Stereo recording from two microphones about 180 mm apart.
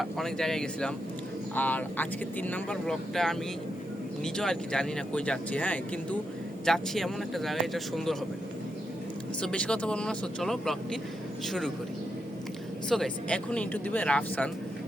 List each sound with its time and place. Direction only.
0.0 s speech: centre (ahead or behind)
9.4 s speech: 5° left (ahead or behind)
12.9 s speech: 5° left (ahead or behind)